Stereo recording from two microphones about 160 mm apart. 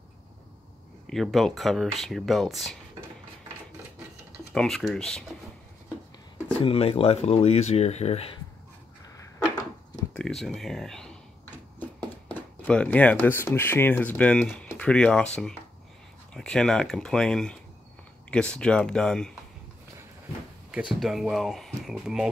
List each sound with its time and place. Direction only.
1.0 s speech: centre (ahead or behind)
4.5 s speech: 5° left (ahead or behind)
6.6 s speech: 35° left (ahead or behind)
10.1 s speech: centre (ahead or behind)
20.7 s speech: 5° right (ahead or behind)